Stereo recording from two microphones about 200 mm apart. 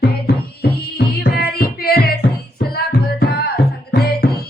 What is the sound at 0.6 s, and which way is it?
Music, 50° left (ahead or behind).